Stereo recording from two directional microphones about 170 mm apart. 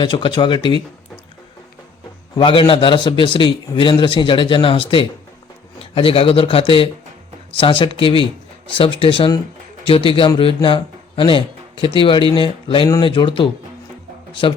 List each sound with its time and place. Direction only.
0.0 s speech: 30° left (ahead or behind)
2.3 s a man's voice: 30° left (ahead or behind)